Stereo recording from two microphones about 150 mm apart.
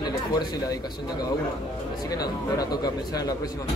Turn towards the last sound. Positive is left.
turn(degrees=25)  # may be behind; listen again after turning